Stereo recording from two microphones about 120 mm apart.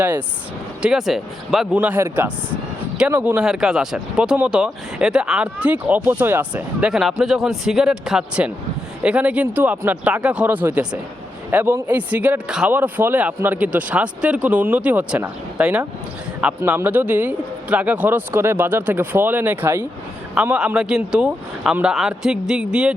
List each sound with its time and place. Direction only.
0.8 s speech: 5° right (ahead or behind)
1.7 s speech: 15° right (ahead or behind)